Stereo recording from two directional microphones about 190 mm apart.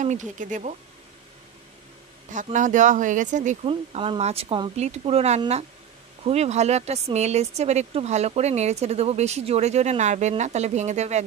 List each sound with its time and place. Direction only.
0.0 s speech: 40° right (ahead or behind)
2.3 s speech: 40° right (ahead or behind)